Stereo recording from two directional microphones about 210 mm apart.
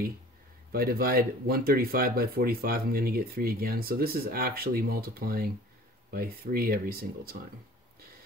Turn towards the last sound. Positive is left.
turn(degrees=-45)  # may be behind; listen again after turning